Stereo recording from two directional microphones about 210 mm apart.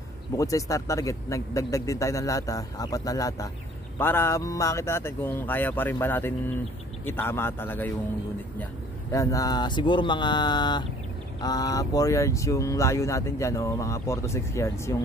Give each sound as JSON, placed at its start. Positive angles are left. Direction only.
{"t": 0.4, "sound": "speech", "side_deg": 15}
{"t": 9.1, "sound": "speech", "side_deg": 15}